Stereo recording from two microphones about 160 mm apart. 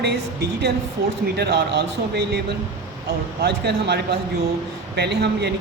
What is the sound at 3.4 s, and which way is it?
Speech, 90° right.